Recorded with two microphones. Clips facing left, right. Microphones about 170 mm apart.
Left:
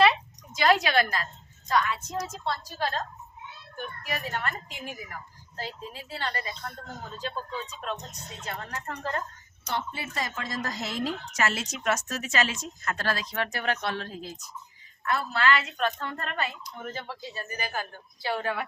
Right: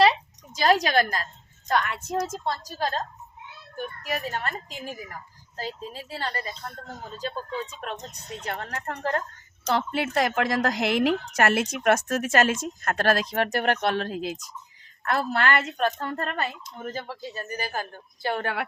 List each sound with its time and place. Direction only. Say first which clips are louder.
0.5 s a woman's voice: right 2 dB; 40° right (ahead or behind)
1.7 s speech: right 1 dB; 60° right (ahead or behind)
2.2 s speech: right 3 dB; 45° right (ahead or behind)
8.4 s speech: right 3 dB; 65° right (ahead or behind)
9.6 s speech: right 8 dB; 85° right; by 18.5 s 50° right (ahead or behind)